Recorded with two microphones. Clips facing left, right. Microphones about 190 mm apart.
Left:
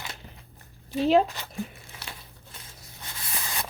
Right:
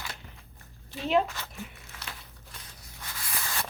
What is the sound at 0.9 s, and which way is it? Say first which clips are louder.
Speech: left 5 dB; 35° left (ahead or behind).